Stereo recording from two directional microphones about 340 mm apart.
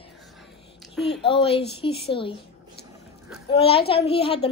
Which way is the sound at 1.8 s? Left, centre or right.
Centre.